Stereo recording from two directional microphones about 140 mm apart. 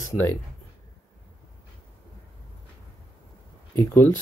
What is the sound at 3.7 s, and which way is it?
Speech, 15° left (ahead or behind).